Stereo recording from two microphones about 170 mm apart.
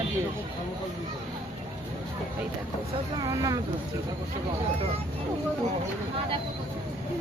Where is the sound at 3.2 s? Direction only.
20° right (ahead or behind).